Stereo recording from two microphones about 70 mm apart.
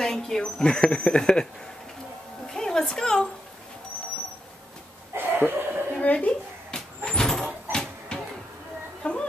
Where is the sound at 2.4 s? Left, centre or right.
Centre.